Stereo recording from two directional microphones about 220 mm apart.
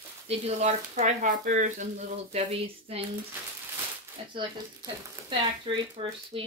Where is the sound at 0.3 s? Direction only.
30° right (ahead or behind).